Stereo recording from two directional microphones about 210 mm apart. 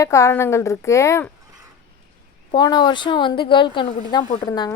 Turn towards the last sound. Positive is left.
turn(degrees=15)  # may be behind; listen again after turning